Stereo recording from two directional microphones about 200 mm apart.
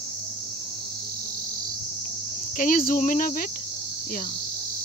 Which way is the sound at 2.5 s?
40° left (ahead or behind).